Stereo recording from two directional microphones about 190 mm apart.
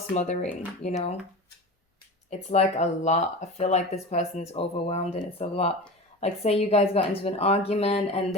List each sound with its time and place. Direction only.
0.1 s speech: 35° left (ahead or behind)
2.5 s speech: 35° left (ahead or behind)